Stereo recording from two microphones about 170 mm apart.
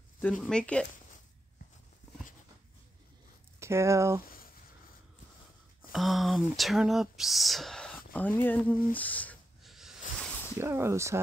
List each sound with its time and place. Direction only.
0.2 s speech: 5° left (ahead or behind)
3.5 s speech: 15° right (ahead or behind)
5.9 s speech: centre (ahead or behind)
9.6 s a sound: centre (ahead or behind)
10.6 s speech: 15° right (ahead or behind)